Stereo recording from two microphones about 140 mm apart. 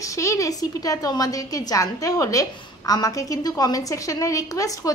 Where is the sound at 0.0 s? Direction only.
20° left (ahead or behind).